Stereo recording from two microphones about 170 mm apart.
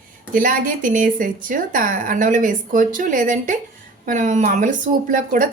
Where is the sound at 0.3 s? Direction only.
55° right (ahead or behind).